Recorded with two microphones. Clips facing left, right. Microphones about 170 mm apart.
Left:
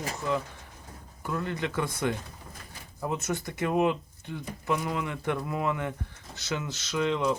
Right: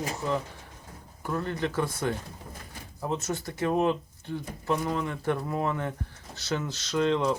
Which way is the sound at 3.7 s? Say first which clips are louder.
Left 2 dB; 15° left (ahead or behind).